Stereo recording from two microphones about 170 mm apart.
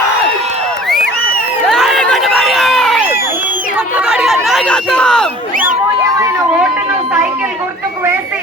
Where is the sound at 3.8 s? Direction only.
10° right (ahead or behind).